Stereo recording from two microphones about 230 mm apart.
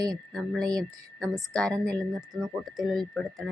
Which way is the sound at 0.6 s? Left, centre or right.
Centre.